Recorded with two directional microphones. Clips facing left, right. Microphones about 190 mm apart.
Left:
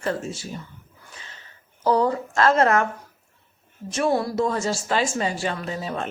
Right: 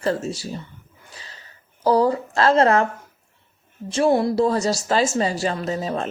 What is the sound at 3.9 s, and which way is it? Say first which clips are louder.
Speech: right 4 dB; 25° right (ahead or behind).